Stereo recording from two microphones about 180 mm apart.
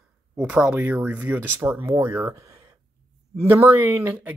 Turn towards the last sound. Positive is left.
turn(degrees=-10)  # may be behind; listen again after turning